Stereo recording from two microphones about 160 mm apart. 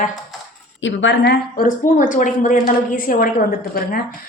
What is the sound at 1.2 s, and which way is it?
A woman's voice, 80° left.